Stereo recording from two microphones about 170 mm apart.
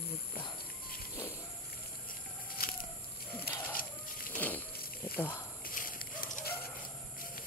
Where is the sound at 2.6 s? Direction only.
60° left (ahead or behind).